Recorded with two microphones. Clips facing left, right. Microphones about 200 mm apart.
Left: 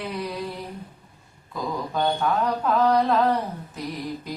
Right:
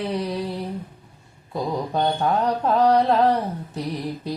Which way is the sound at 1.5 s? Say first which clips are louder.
Right 3 dB; 30° right (ahead or behind).